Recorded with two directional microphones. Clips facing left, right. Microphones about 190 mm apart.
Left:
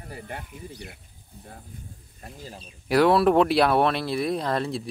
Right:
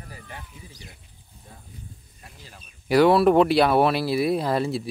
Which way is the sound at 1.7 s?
50° left (ahead or behind).